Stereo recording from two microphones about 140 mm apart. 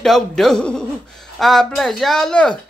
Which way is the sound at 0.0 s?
Centre (ahead or behind).